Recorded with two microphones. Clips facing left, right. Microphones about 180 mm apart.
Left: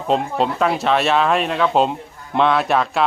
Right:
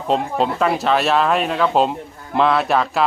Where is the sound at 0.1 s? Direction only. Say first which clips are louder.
Even; centre (ahead or behind).